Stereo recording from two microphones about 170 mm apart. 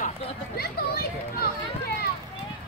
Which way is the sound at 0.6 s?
65° left (ahead or behind).